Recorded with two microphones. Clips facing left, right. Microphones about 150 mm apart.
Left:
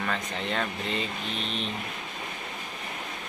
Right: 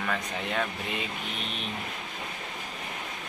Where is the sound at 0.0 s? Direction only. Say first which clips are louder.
Left 1 dB; 5° right (ahead or behind).